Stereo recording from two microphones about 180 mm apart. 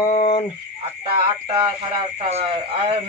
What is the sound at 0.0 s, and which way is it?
Frog, 30° left (ahead or behind).